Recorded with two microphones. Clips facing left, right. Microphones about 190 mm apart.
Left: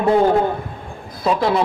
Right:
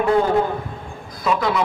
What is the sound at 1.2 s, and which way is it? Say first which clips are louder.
Speech: left 3 dB; 30° left (ahead or behind).